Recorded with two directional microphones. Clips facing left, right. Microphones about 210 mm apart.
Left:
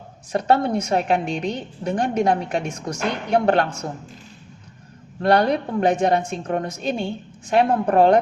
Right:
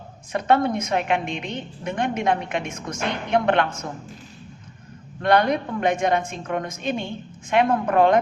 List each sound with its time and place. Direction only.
0.3 s a woman's voice: 35° left (ahead or behind)
5.2 s a woman's voice: 35° left (ahead or behind)